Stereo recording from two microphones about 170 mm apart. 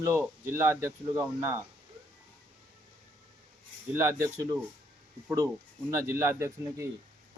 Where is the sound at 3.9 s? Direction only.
15° right (ahead or behind).